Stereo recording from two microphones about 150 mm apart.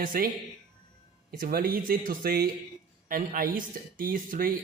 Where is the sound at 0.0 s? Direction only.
75° right (ahead or behind).